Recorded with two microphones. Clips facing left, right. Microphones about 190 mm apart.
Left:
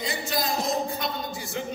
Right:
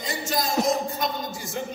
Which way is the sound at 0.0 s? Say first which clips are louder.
Even; 45° right (ahead or behind).